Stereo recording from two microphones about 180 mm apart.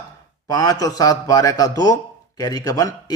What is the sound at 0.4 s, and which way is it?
A man's voice, 20° left (ahead or behind).